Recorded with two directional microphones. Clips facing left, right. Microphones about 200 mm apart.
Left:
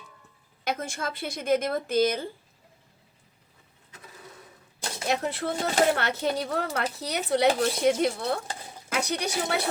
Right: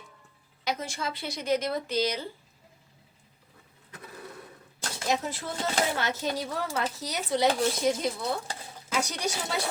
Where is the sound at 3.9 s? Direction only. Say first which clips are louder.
Right 4 dB; 60° right (ahead or behind).